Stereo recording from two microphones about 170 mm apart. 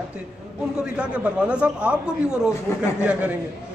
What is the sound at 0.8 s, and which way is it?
A man's voice, 5° right (ahead or behind).